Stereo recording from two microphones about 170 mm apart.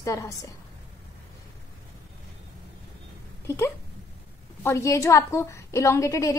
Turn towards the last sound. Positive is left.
turn(degrees=20)  # may be behind; listen again after turning